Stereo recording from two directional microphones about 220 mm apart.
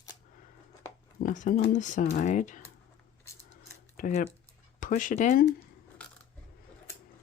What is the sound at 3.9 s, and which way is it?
Speech, 35° left (ahead or behind).